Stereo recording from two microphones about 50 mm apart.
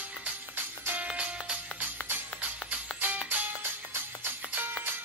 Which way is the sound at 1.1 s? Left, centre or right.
Right.